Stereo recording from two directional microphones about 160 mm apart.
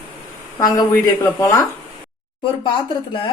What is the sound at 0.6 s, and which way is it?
Speech, 20° left (ahead or behind).